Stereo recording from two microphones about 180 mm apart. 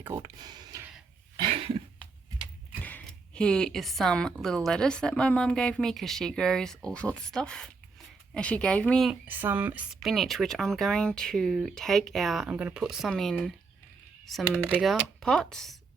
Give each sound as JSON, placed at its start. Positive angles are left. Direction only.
{"t": 0.0, "sound": "speech", "side_deg": -15}
{"t": 1.4, "sound": "cough", "side_deg": -30}
{"t": 2.8, "sound": "speech", "side_deg": 5}
{"t": 9.2, "sound": "speech", "side_deg": -10}